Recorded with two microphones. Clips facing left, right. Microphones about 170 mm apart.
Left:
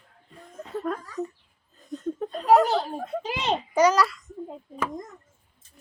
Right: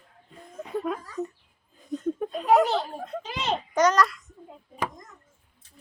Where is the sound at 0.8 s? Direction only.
5° right (ahead or behind).